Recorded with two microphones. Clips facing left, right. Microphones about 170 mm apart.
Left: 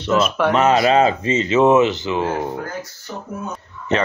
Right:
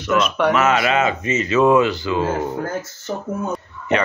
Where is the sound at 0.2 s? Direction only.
Centre (ahead or behind).